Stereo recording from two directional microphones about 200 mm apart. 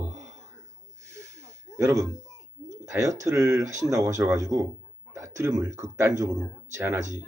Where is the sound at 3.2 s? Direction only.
15° right (ahead or behind).